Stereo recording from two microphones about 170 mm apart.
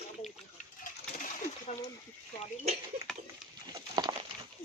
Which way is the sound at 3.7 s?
25° right (ahead or behind).